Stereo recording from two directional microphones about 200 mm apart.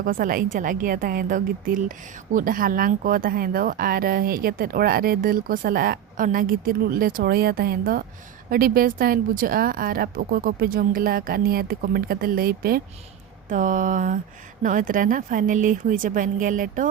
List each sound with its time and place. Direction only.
0.0 s speech: 45° right (ahead or behind)